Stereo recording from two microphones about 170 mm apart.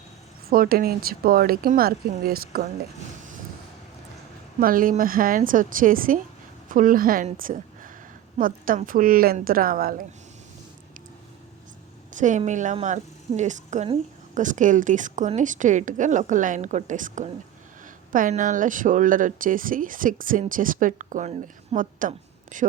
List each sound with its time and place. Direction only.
0.5 s speech: 55° right (ahead or behind)
4.6 s a woman's voice: 55° right (ahead or behind)
12.1 s a woman's voice: 45° right (ahead or behind)